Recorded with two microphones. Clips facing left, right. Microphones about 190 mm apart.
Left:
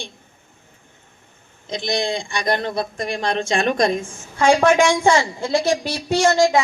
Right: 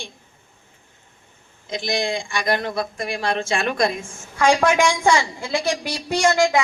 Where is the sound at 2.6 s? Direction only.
25° left (ahead or behind).